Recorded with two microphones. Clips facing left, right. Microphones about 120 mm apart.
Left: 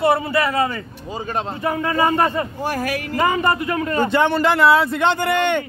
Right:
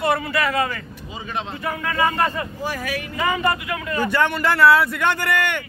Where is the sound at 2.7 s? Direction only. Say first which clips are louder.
Left 5 dB; 40° left (ahead or behind).